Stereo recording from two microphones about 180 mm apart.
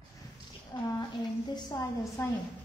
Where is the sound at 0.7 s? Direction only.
25° left (ahead or behind).